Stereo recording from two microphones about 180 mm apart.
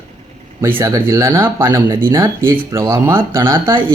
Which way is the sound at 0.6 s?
15° right (ahead or behind).